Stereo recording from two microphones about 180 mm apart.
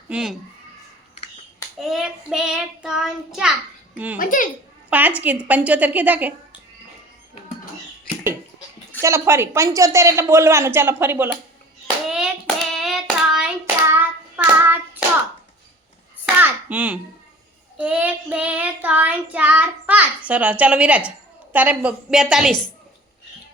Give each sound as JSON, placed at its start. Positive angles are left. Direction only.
{"t": 0.1, "sound": "child singing", "side_deg": -5}
{"t": 1.8, "sound": "child singing", "side_deg": 0}
{"t": 3.9, "sound": "a child's voice", "side_deg": -10}
{"t": 4.2, "sound": "a child's voice", "side_deg": 50}
{"t": 4.9, "sound": "child singing", "side_deg": -10}
{"t": 9.0, "sound": "child singing", "side_deg": -15}
{"t": 12.0, "sound": "hands", "side_deg": -5}
{"t": 16.2, "sound": "hands", "side_deg": -10}
{"t": 17.7, "sound": "child singing", "side_deg": -10}